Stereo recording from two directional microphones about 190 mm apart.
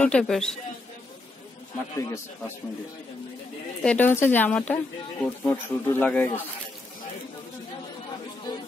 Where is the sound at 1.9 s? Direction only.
15° left (ahead or behind).